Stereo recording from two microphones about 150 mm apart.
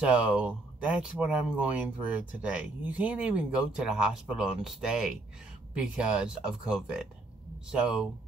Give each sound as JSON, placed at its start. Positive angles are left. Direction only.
{"t": 0.0, "sound": "speech", "side_deg": -10}